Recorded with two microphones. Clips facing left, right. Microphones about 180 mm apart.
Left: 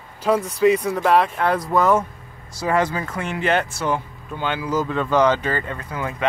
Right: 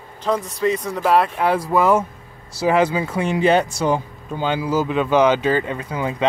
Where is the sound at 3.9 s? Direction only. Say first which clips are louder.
Right 3 dB; 35° right (ahead or behind).